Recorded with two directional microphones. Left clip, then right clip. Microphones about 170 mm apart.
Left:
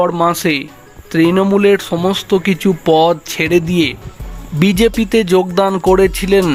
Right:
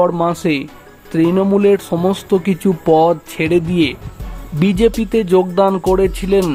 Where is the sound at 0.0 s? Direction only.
5° right (ahead or behind).